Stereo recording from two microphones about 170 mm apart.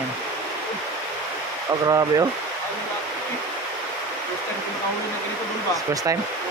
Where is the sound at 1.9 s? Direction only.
20° right (ahead or behind).